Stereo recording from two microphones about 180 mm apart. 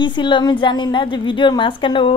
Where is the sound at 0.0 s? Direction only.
25° left (ahead or behind).